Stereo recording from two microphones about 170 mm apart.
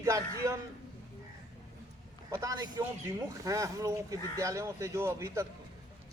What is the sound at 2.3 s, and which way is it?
Speech, 20° right (ahead or behind).